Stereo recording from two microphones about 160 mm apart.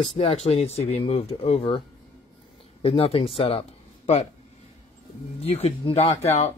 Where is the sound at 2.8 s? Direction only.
35° left (ahead or behind).